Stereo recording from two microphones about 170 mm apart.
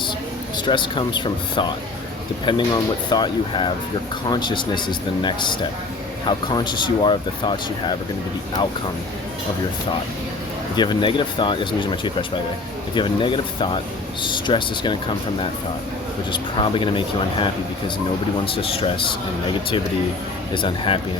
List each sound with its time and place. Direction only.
0.5 s speech: 25° left (ahead or behind)
10.8 s speech: 25° left (ahead or behind)
16.3 s speech: 30° left (ahead or behind)
20.5 s speech: 30° left (ahead or behind)